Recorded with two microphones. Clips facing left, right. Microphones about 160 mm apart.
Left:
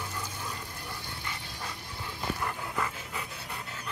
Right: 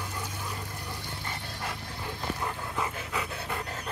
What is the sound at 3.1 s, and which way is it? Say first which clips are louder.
Pant: right 6 dB; 90° right.